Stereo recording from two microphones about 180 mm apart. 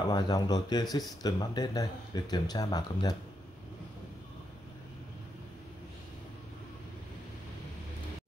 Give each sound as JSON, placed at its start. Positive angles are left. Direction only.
{"t": 0.1, "sound": "speech", "side_deg": 20}